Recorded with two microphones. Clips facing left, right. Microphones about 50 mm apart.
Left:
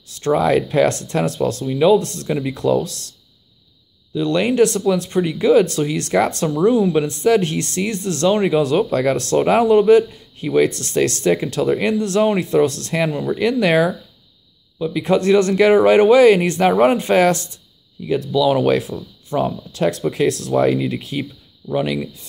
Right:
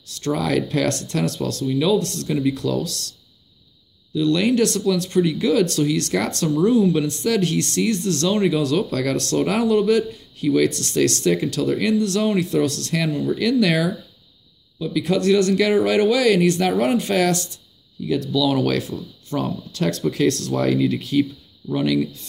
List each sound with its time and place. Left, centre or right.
0.1 s speech: left
4.1 s speech: left